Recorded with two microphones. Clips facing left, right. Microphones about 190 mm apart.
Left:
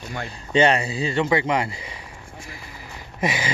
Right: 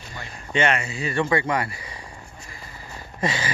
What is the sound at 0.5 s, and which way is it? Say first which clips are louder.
Speech: left 4 dB; 35° left (ahead or behind).